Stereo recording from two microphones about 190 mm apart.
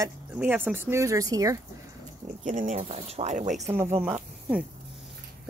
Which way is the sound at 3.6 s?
15° right (ahead or behind).